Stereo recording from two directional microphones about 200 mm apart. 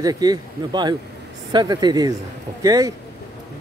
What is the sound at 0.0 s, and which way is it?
Speech, 20° right (ahead or behind).